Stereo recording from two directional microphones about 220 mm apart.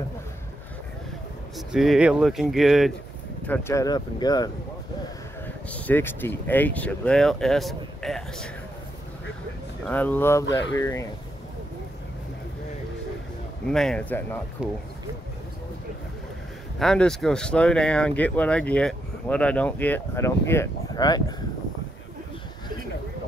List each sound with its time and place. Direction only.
1.7 s speech: centre (ahead or behind)
3.4 s speech: 10° left (ahead or behind)
5.7 s speech: 10° left (ahead or behind)
9.8 s speech: 10° left (ahead or behind)
13.7 s speech: 5° left (ahead or behind)
16.7 s speech: 5° left (ahead or behind); by 21.4 s 20° left (ahead or behind)